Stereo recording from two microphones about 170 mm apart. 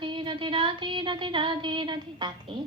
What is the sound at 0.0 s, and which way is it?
Music, 30° right (ahead or behind).